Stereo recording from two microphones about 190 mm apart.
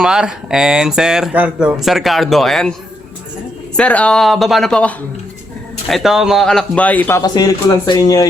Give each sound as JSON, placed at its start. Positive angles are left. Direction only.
{"t": 0.0, "sound": "speech", "side_deg": -5}
{"t": 3.8, "sound": "speech", "side_deg": 5}
{"t": 7.2, "sound": "speech", "side_deg": 20}